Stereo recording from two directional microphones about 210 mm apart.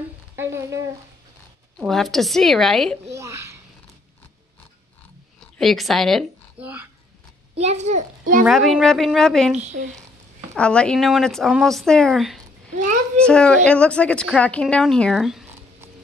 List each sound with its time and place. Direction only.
0.4 s speech: 15° right (ahead or behind)
1.8 s speech: centre (ahead or behind)
3.2 s speech: 15° right (ahead or behind)
5.6 s speech: centre (ahead or behind)
7.5 s a child's voice: 30° right (ahead or behind)
8.5 s speech: centre (ahead or behind)